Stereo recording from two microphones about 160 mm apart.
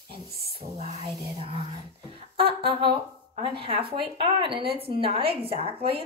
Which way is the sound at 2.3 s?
35° right (ahead or behind).